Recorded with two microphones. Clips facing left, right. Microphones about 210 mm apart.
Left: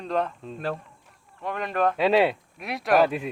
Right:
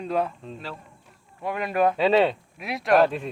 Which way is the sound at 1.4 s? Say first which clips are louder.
Right 2 dB; 10° right (ahead or behind).